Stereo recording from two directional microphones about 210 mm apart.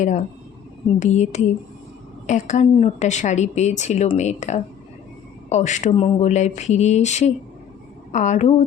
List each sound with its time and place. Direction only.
0.0 s speech: 35° left (ahead or behind)
5.9 s speech: 25° left (ahead or behind)